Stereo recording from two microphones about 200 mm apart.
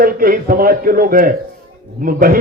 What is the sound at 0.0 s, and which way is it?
A man's voice, 45° right (ahead or behind).